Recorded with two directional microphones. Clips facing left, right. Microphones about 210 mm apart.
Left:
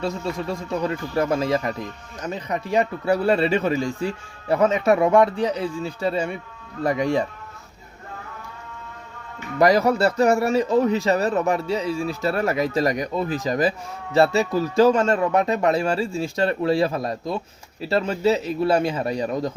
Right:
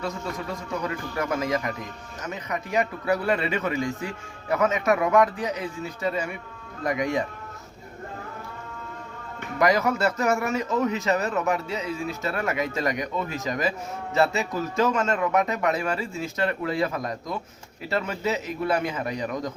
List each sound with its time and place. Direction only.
0.0 s speech: 30° left (ahead or behind)
9.6 s speech: 35° left (ahead or behind)